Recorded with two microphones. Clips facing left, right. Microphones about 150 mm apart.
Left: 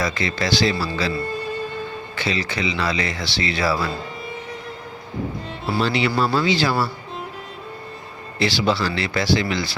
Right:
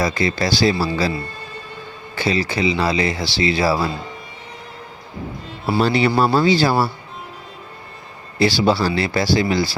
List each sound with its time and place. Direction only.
0.0 s speech: 35° right (ahead or behind)
2.1 s speech: 35° right (ahead or behind)
5.8 s speech: 40° right (ahead or behind)
8.4 s speech: 35° right (ahead or behind)